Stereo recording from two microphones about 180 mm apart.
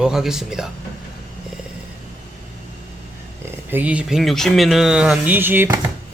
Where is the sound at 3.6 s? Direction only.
10° right (ahead or behind).